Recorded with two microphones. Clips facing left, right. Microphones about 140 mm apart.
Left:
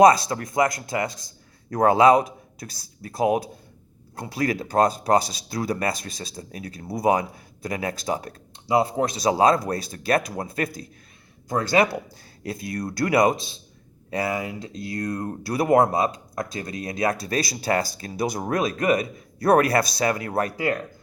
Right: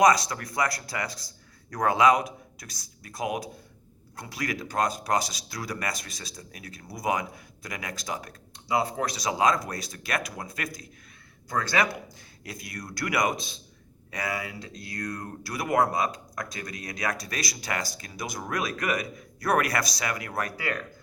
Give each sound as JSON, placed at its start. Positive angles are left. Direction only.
{"t": 0.0, "sound": "speech", "side_deg": 30}